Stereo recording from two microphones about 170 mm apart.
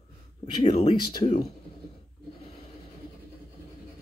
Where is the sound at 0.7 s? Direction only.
25° left (ahead or behind).